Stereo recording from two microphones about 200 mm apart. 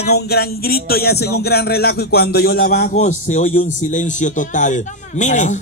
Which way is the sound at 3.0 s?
35° left (ahead or behind).